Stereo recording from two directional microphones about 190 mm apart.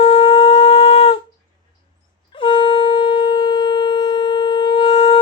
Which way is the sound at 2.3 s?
25° left (ahead or behind).